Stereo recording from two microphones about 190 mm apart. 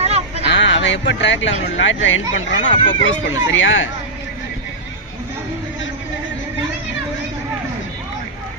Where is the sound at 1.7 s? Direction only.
85° left.